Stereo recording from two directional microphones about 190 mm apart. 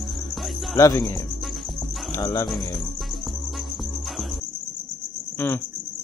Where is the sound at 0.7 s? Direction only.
20° left (ahead or behind).